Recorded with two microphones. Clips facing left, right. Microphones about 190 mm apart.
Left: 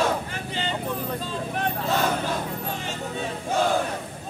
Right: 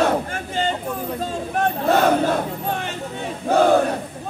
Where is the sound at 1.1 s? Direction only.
45° right (ahead or behind).